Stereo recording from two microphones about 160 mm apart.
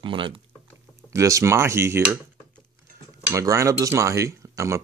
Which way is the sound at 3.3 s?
20° right (ahead or behind).